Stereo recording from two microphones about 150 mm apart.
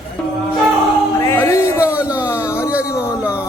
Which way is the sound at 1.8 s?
10° right (ahead or behind).